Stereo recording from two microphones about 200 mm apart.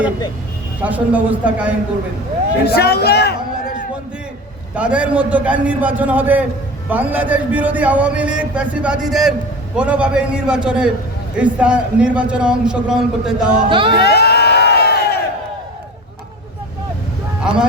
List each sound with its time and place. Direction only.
0.8 s a man's voice: 5° right (ahead or behind)
2.6 s speech: 55° left (ahead or behind)
4.7 s a man's voice: 5° right (ahead or behind)
13.7 s music: 25° right (ahead or behind)
14.0 s crowd: 55° left (ahead or behind)